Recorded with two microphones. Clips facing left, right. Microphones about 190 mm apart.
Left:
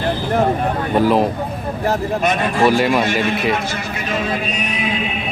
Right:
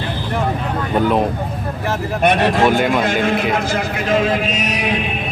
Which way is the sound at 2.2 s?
70° right (ahead or behind).